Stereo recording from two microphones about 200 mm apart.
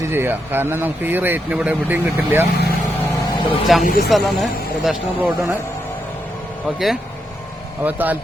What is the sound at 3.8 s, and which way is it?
Speech, 50° left (ahead or behind).